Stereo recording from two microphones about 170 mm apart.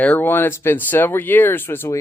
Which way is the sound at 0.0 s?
10° left (ahead or behind).